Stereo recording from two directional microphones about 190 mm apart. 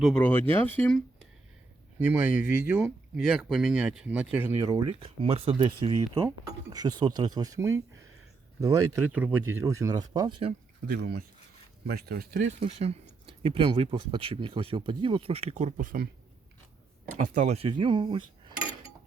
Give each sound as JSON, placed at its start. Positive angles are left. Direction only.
{"t": 0.0, "sound": "speech", "side_deg": 5}
{"t": 2.0, "sound": "speech", "side_deg": -10}
{"t": 4.6, "sound": "speech", "side_deg": -25}
{"t": 10.8, "sound": "speech", "side_deg": -55}
{"t": 12.5, "sound": "speech", "side_deg": -30}
{"t": 17.3, "sound": "speech", "side_deg": -35}